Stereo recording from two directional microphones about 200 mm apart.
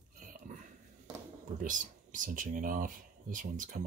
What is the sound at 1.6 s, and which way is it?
Speech, 40° right (ahead or behind).